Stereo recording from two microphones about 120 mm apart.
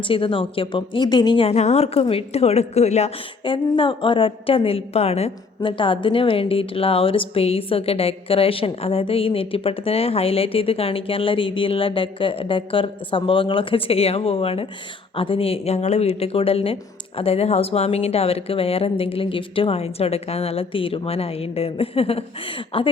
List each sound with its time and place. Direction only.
0.0 s a woman's voice: 45° left (ahead or behind)
1.5 s speech: 65° left (ahead or behind)
3.4 s a woman's voice: 45° left (ahead or behind)
5.6 s a woman's voice: 45° left (ahead or behind)